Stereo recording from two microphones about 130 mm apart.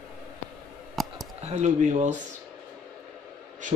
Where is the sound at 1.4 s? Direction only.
60° right (ahead or behind).